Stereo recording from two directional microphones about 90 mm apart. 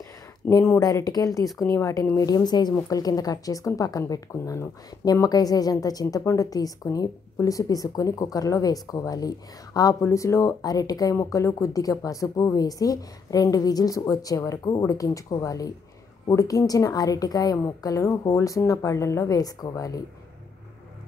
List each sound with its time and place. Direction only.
0.5 s speech: 35° left (ahead or behind)
5.0 s a woman's voice: 45° left (ahead or behind)